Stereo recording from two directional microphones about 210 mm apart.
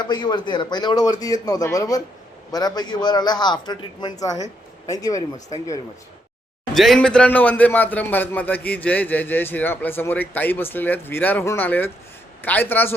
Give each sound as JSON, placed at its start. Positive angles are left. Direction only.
{"t": 0.0, "sound": "a man's voice", "side_deg": 20}
{"t": 6.7, "sound": "a man's voice", "side_deg": 0}